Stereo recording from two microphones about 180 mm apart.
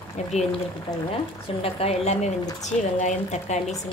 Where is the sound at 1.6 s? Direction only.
35° left (ahead or behind).